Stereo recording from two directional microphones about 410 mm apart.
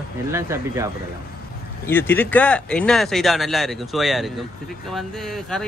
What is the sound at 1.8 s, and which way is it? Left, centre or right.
Speech, centre.